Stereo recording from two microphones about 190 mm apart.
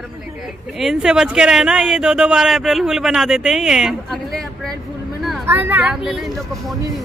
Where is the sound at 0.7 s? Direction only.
Centre (ahead or behind).